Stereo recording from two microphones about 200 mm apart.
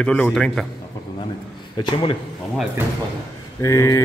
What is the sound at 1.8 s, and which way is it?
Speech, 25° left (ahead or behind).